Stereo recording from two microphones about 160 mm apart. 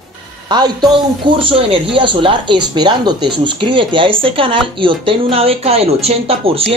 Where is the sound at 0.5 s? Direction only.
25° right (ahead or behind).